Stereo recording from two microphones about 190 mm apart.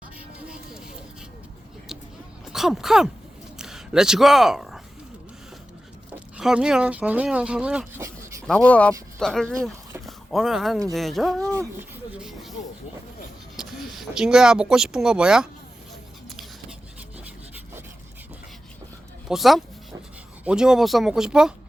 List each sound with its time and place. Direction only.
0.3 s music: 5° right (ahead or behind)
2.5 s speech: centre (ahead or behind)
3.6 s a sound: 5° right (ahead or behind)
6.3 s speech: 5° right (ahead or behind)
8.4 s speech: 5° left (ahead or behind)
11.5 s a sound: 10° right (ahead or behind)
13.6 s speech: centre (ahead or behind)
19.3 s speech: centre (ahead or behind)